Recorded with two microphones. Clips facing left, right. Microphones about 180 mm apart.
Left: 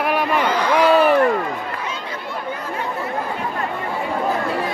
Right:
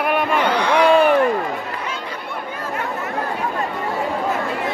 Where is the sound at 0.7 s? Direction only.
5° left (ahead or behind).